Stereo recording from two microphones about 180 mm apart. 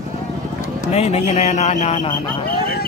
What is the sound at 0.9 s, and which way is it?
Speech, 35° left (ahead or behind).